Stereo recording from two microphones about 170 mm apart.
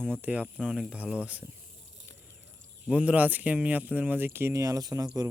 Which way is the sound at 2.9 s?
5° right (ahead or behind).